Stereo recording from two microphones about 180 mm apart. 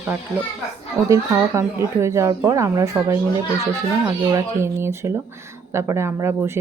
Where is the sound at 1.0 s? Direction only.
15° right (ahead or behind).